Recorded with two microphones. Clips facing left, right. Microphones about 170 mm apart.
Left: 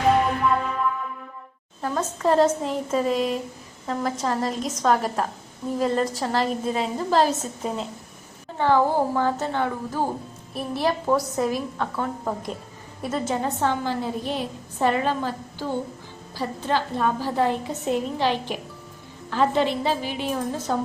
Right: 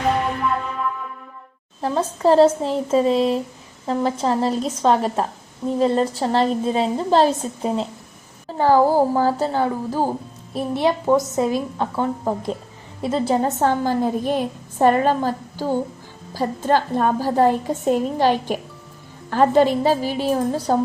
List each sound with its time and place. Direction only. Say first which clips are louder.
1.8 s a woman's voice: right 5 dB; 30° right (ahead or behind)
13.6 s a woman's voice: right 5 dB; 45° right (ahead or behind)